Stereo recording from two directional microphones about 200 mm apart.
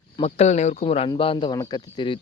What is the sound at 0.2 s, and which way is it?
Speech, 30° left (ahead or behind).